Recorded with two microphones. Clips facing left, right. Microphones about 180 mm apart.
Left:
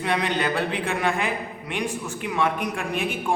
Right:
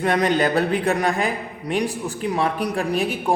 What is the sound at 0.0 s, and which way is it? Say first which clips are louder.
A man's voice: right 5 dB; 45° right (ahead or behind).